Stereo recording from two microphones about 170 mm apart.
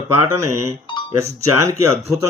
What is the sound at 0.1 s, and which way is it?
Speech, 15° right (ahead or behind).